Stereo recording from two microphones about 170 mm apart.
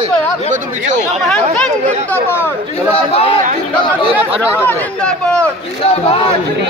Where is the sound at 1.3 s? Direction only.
5° left (ahead or behind).